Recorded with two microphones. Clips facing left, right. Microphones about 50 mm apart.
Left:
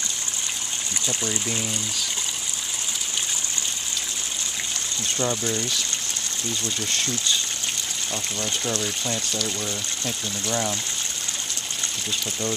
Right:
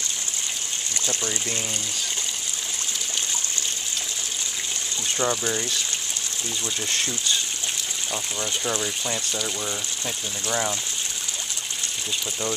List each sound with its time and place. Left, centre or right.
5.1 s speech: centre
8.1 s speech: centre